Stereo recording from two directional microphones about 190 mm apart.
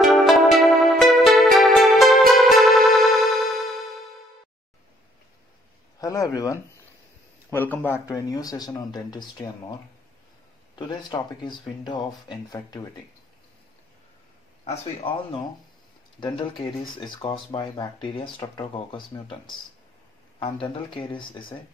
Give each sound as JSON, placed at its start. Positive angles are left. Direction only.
{"t": 0.0, "sound": "music", "side_deg": 0}
{"t": 5.9, "sound": "speech", "side_deg": 20}
{"t": 10.8, "sound": "speech", "side_deg": 20}
{"t": 14.6, "sound": "speech", "side_deg": 30}
{"t": 20.3, "sound": "speech", "side_deg": 25}